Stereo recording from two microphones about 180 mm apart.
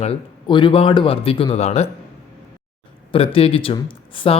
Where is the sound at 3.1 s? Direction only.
30° left (ahead or behind).